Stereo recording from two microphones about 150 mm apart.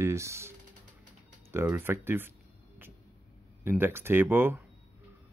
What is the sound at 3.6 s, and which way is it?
Speech, 15° right (ahead or behind).